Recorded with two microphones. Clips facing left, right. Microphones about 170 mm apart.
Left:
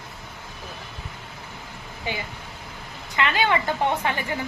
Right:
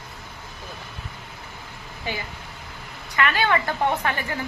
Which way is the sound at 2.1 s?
20° left (ahead or behind).